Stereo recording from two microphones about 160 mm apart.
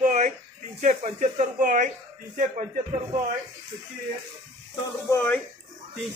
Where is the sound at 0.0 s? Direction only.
50° right (ahead or behind).